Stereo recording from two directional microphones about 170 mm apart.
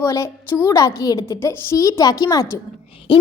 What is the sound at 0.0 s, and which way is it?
A woman's voice, 15° left (ahead or behind).